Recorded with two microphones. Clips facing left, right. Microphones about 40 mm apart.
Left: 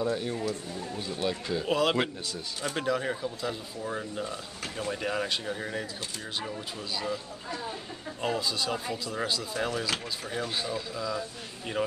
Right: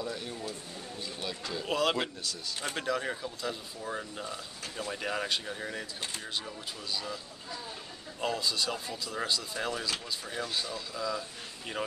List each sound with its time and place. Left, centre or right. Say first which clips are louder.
1.0 s speech: left 7 dB; centre
1.7 s speech: left 3 dB; centre
6.9 s speech: left 4 dB; centre
8.2 s speech: left 1 dB; centre
8.7 s speech: left 5 dB; centre
9.0 s speech: left 2 dB; centre
11.0 s speech: left 2 dB; centre